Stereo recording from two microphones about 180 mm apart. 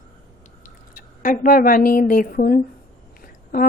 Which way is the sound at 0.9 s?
50° left (ahead or behind).